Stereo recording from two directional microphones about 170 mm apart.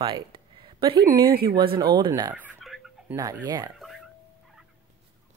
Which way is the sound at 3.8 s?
Centre (ahead or behind).